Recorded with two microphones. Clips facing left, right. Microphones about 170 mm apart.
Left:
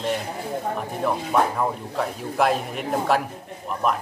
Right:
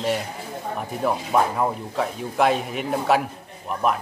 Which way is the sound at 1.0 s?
5° right (ahead or behind).